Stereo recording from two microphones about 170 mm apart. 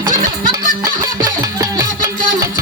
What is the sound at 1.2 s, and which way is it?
Music, 20° right (ahead or behind).